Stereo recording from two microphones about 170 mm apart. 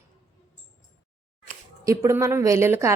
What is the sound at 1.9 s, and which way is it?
A woman's voice, 20° right (ahead or behind).